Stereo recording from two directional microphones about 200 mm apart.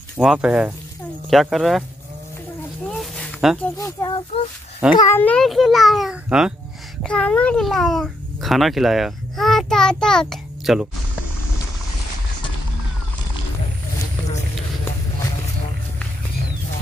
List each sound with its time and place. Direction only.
0.2 s a child's voice: 5° right (ahead or behind)
3.0 s a sound: centre (ahead or behind)
3.7 s a child's voice: 20° left (ahead or behind); by 10.9 s centre (ahead or behind)